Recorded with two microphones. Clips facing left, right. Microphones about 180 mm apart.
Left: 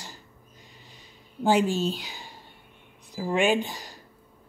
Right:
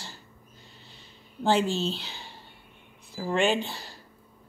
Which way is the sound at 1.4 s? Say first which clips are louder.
Left 2 dB; 10° left (ahead or behind).